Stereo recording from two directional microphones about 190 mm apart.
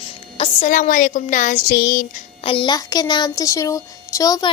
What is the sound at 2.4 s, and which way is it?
Speech, 25° left (ahead or behind).